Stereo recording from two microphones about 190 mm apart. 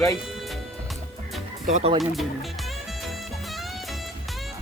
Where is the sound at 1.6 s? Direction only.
40° right (ahead or behind).